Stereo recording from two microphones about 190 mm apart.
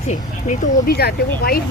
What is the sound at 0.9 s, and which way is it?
Speech, 55° left (ahead or behind).